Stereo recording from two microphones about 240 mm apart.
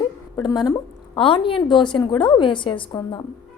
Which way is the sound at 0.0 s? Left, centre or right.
Centre.